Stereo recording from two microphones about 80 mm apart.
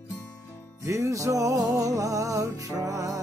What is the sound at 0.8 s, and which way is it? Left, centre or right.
Music, right.